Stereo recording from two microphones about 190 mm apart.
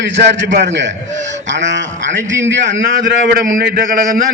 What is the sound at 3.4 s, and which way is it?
Speech, 45° right (ahead or behind).